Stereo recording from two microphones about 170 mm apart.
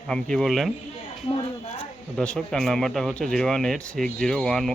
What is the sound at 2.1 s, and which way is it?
Speech, 5° left (ahead or behind).